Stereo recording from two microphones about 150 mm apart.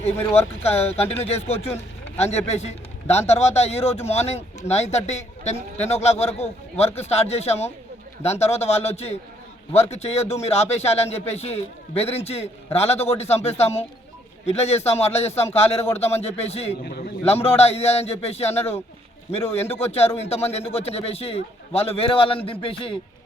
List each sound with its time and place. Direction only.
0.3 s speech: 45° left (ahead or behind)
19.5 s a man's voice: 15° left (ahead or behind)
19.8 s speech: 45° left (ahead or behind)